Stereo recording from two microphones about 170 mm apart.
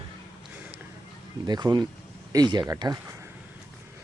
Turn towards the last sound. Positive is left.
turn(degrees=-20)  # may be behind; listen again after turning